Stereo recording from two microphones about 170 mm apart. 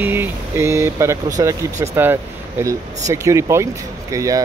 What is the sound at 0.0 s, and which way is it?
Speech, 15° right (ahead or behind).